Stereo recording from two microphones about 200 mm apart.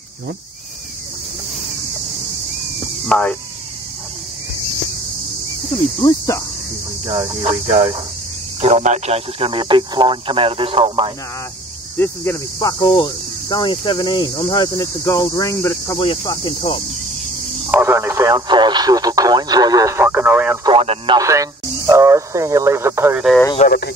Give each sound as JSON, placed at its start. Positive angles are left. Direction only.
{"t": 3.1, "sound": "speech", "side_deg": 5}
{"t": 5.8, "sound": "speech", "side_deg": 20}
{"t": 7.1, "sound": "speech", "side_deg": -30}
{"t": 12.0, "sound": "cricket", "side_deg": 15}
{"t": 17.6, "sound": "speech", "side_deg": -10}
{"t": 20.6, "sound": "speech", "side_deg": -30}
{"t": 21.2, "sound": "speech", "side_deg": -15}
{"t": 23.6, "sound": "speech", "side_deg": 35}